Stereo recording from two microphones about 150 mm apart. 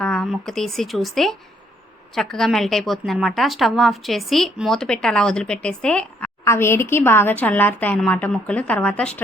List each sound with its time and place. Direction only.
0.0 s a woman's voice: 5° left (ahead or behind)